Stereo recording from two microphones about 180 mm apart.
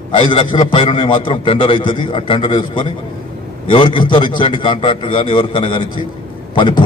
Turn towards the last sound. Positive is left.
turn(degrees=25)  # may be behind; listen again after turning